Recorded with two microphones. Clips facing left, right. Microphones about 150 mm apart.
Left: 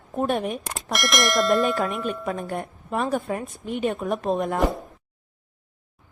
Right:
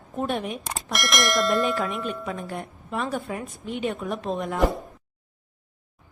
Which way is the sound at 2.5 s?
45° left (ahead or behind).